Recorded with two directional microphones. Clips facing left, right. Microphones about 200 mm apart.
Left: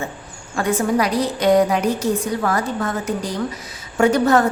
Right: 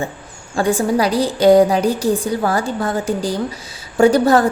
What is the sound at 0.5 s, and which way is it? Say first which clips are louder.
A woman's voice: right 2 dB; 30° right (ahead or behind).